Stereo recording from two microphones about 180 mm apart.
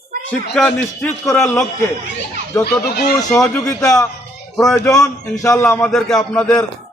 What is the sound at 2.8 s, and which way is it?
Speech, 60° left (ahead or behind).